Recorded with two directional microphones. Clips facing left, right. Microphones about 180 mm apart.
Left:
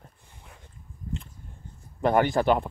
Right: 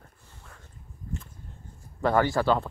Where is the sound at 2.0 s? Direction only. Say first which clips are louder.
Left 2 dB; 20° left (ahead or behind).